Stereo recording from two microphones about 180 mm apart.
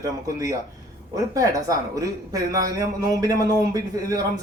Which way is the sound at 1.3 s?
20° right (ahead or behind).